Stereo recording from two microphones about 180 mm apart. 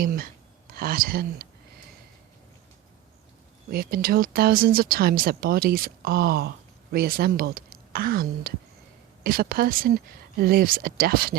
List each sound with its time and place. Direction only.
0.0 s speech: 55° right (ahead or behind)
3.7 s speech: 55° right (ahead or behind)